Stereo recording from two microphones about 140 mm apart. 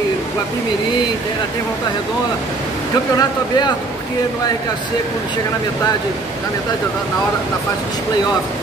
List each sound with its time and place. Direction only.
3.2 s speech: 30° left (ahead or behind)